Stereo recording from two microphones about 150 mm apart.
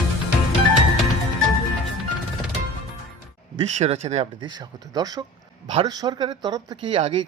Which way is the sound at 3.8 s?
45° right (ahead or behind).